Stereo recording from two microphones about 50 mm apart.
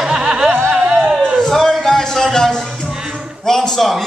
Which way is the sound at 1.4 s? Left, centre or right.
Centre.